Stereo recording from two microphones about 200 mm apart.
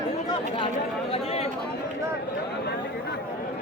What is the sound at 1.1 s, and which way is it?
Chatter, 30° left (ahead or behind).